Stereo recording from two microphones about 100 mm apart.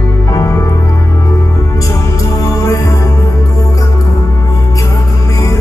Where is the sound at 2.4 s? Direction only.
30° left (ahead or behind).